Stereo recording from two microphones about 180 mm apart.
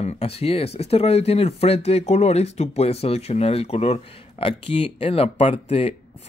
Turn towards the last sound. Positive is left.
turn(degrees=35)  # may be behind; listen again after turning